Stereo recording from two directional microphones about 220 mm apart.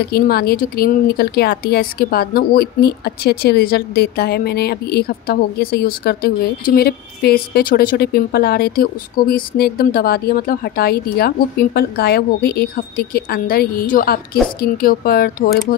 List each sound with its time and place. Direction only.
0.1 s a woman's voice: 45° left (ahead or behind)